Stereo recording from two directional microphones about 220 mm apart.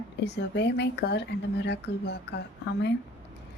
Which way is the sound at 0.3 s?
50° left (ahead or behind).